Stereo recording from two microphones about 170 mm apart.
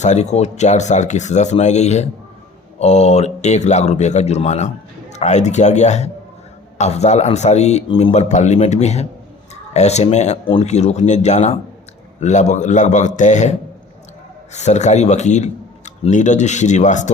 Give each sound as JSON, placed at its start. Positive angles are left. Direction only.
{"t": 0.0, "sound": "speech", "side_deg": 40}
{"t": 14.5, "sound": "speech", "side_deg": 40}